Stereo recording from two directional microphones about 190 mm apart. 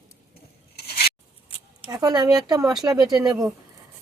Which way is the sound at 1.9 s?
20° right (ahead or behind).